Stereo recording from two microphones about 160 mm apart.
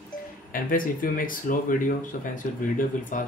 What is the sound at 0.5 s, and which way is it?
Speech, 60° left (ahead or behind).